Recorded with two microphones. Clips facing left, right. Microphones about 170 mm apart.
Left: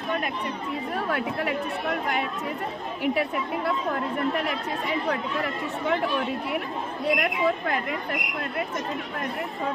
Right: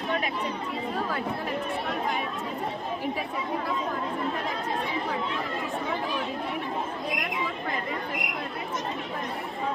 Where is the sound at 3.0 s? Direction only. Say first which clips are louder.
Left 5 dB; 70° left (ahead or behind).